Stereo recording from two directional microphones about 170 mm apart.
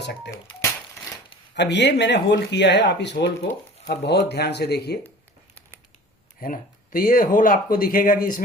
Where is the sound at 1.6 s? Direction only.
90° left.